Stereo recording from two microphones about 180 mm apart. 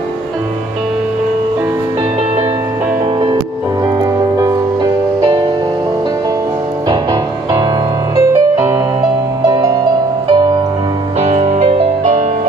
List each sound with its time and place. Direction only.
4.0 s music: 20° right (ahead or behind)
6.9 s music: 20° right (ahead or behind)
10.3 s music: 25° right (ahead or behind)
11.2 s music: 40° right (ahead or behind)